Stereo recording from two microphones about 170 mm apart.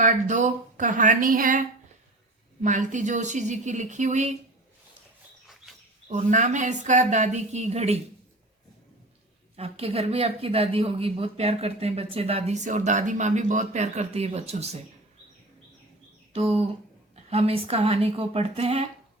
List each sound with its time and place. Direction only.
0.0 s speech: 45° right (ahead or behind)
6.1 s speech: 45° right (ahead or behind)
9.6 s speech: 35° right (ahead or behind)
16.3 s speech: 35° right (ahead or behind)